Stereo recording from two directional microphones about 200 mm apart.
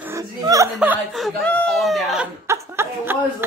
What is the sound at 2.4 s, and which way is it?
Chuckle, 15° right (ahead or behind).